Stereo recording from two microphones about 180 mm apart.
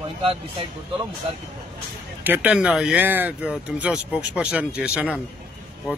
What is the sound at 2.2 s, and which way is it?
Speech, 10° right (ahead or behind).